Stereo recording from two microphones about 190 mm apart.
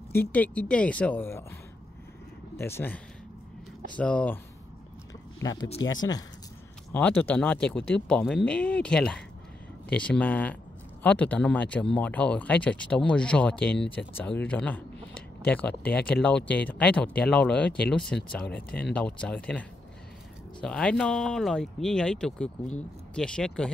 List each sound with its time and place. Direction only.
0.1 s speech: 10° left (ahead or behind)
2.5 s speech: 10° left (ahead or behind)
5.4 s speech: 20° left (ahead or behind)
6.9 s speech: 10° left (ahead or behind)
14.4 s a sound: 5° left (ahead or behind)
15.9 s speech: 5° left (ahead or behind)
20.6 s speech: 5° left (ahead or behind)